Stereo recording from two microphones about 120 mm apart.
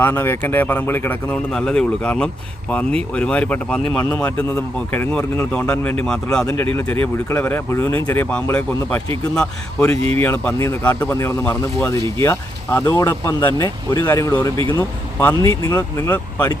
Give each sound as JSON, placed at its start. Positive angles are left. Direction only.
{"t": 0.0, "sound": "speech", "side_deg": 20}
{"t": 6.4, "sound": "speech", "side_deg": 20}
{"t": 14.5, "sound": "speech", "side_deg": -45}
{"t": 14.8, "sound": "speech", "side_deg": 20}